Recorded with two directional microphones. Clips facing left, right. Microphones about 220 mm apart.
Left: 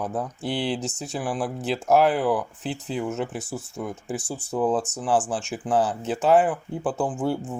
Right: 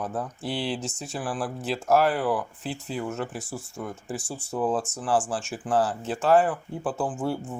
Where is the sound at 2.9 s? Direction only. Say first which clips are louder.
Left 3 dB; 20° left (ahead or behind).